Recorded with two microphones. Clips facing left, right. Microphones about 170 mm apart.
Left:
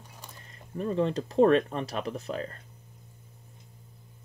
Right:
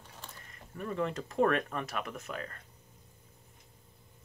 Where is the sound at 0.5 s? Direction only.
30° left (ahead or behind).